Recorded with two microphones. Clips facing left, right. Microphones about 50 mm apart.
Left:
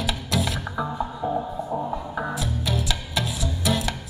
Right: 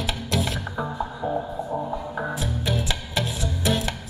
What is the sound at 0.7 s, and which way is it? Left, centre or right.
Music, centre.